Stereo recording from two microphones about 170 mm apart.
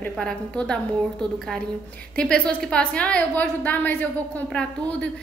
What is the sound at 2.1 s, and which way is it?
A woman's voice, 5° left (ahead or behind).